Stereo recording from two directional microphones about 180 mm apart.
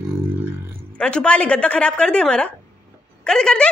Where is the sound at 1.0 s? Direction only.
5° left (ahead or behind).